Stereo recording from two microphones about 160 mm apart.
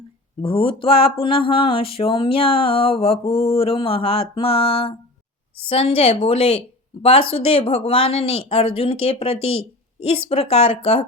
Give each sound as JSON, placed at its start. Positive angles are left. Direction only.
{"t": 0.4, "sound": "speech", "side_deg": 35}